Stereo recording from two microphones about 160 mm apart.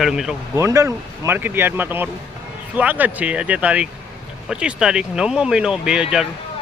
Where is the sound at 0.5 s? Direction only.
20° right (ahead or behind).